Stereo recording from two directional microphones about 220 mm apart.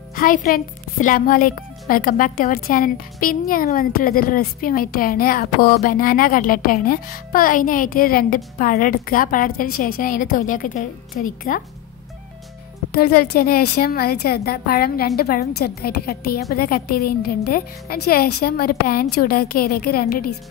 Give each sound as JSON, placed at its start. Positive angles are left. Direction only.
{"t": 0.1, "sound": "a woman's voice", "side_deg": 40}
{"t": 12.9, "sound": "a woman's voice", "side_deg": 45}